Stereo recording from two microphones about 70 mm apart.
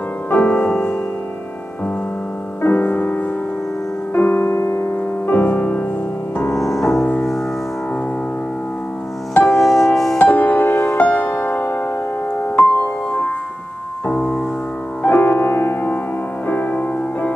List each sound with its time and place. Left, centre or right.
0.3 s music: left
0.6 s music: centre
2.6 s music: left
5.3 s music: left
6.5 s music: left
9.5 s music: centre
10.1 s music: left
15.0 s music: left